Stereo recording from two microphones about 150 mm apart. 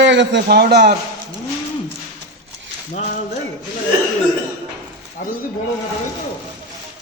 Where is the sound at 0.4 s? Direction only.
90° right.